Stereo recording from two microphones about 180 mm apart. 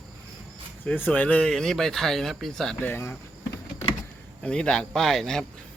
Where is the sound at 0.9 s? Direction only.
10° left (ahead or behind).